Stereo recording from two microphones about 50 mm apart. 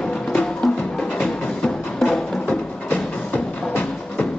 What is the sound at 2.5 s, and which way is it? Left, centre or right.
Music, left.